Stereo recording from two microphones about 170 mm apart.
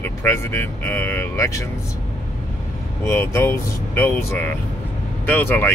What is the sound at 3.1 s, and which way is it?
Speech, 15° left (ahead or behind).